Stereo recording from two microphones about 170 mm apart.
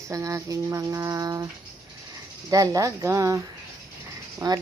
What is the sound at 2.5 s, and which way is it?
Speech, 20° right (ahead or behind).